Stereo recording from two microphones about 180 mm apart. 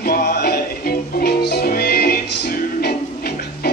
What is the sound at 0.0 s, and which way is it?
Music, 55° left (ahead or behind).